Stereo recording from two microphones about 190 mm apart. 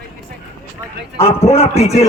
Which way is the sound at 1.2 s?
30° left (ahead or behind).